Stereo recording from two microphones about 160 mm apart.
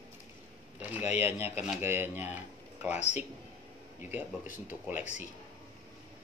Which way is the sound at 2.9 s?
45° left (ahead or behind).